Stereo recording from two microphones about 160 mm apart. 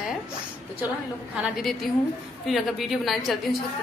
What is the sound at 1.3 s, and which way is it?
A woman's voice, 5° right (ahead or behind).